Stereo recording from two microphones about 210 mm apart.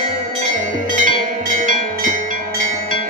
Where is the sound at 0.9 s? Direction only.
40° right (ahead or behind).